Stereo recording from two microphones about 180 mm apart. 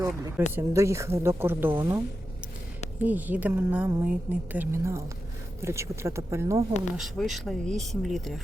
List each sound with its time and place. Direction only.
0.0 s speech: 15° right (ahead or behind)
3.0 s speech: 10° right (ahead or behind)
6.9 s speech: centre (ahead or behind)